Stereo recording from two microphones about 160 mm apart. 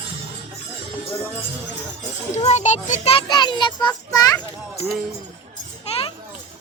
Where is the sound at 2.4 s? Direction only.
45° left (ahead or behind).